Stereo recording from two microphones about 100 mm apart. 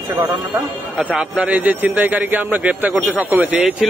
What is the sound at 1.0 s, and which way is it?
A man's voice, 10° right (ahead or behind).